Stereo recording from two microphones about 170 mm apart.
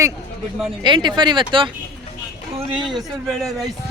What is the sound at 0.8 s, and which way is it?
Speech, 25° right (ahead or behind).